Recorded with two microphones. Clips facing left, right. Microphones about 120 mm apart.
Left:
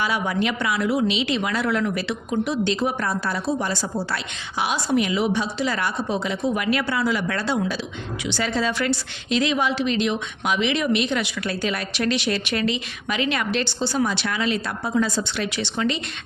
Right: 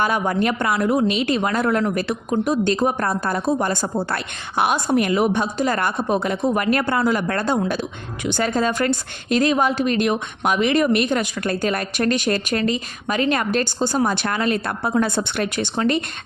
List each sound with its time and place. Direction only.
0.0 s speech: 45° right (ahead or behind)